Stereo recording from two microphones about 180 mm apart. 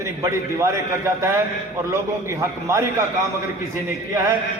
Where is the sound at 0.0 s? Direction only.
15° right (ahead or behind).